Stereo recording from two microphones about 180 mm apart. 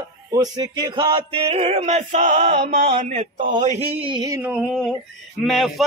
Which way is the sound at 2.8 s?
40° right (ahead or behind).